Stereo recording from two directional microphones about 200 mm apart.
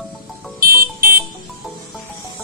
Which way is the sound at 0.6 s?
50° right (ahead or behind).